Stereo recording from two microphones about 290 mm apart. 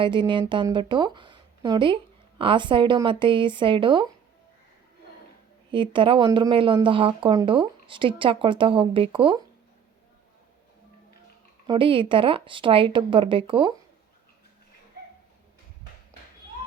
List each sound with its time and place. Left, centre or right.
0.0 s speech: centre
5.7 s speech: centre
11.6 s speech: centre